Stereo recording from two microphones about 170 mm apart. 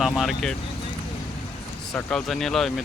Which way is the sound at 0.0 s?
Centre (ahead or behind).